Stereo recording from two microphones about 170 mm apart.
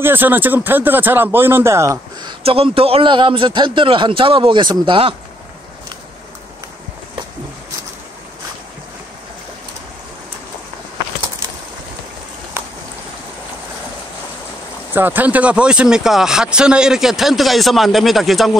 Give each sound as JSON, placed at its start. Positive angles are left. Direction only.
{"t": 0.0, "sound": "speech", "side_deg": -10}
{"t": 2.4, "sound": "a man's voice", "side_deg": -35}
{"t": 15.0, "sound": "speech", "side_deg": -10}